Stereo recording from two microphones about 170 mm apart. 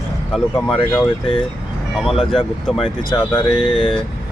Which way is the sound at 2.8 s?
25° left (ahead or behind).